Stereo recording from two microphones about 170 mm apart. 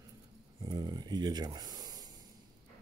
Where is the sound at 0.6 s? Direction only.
25° right (ahead or behind).